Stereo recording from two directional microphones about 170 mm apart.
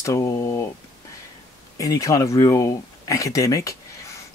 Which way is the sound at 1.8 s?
20° left (ahead or behind).